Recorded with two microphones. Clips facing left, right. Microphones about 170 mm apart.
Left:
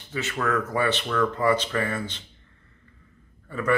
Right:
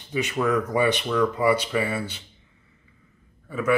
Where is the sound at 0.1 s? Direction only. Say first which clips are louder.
Right 3 dB; 15° right (ahead or behind).